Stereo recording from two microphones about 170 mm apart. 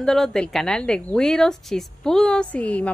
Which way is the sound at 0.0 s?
5° left (ahead or behind).